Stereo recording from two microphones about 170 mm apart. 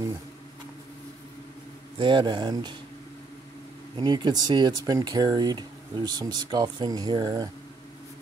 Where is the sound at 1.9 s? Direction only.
30° right (ahead or behind).